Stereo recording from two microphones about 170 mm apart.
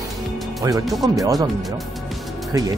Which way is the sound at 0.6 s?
20° right (ahead or behind).